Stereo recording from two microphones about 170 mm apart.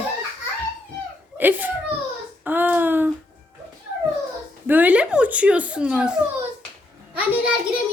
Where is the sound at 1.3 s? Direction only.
10° right (ahead or behind).